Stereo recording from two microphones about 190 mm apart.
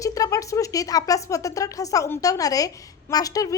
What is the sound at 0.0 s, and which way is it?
Speech, 15° left (ahead or behind).